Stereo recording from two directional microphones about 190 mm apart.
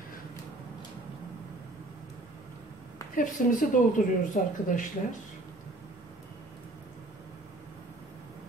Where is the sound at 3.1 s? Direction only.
45° left (ahead or behind).